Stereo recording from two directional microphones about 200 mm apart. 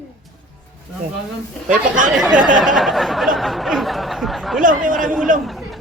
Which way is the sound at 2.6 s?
Centre (ahead or behind).